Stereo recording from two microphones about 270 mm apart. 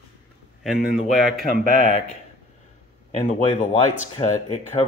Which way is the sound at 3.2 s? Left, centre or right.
Left.